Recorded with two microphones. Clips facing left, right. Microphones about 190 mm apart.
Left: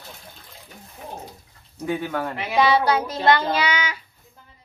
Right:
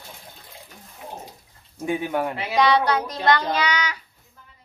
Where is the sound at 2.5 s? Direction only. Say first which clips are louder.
Left 1 dB; 5° left (ahead or behind).